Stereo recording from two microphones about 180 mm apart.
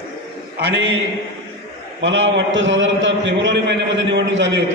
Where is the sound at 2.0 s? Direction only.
90° right.